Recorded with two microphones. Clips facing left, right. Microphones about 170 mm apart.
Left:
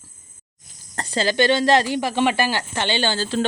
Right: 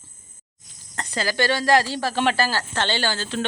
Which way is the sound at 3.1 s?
35° left (ahead or behind).